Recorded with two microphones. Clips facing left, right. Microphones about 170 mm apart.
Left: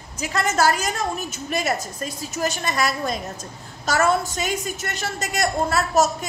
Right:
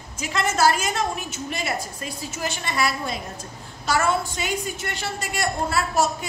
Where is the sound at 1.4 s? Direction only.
45° left (ahead or behind).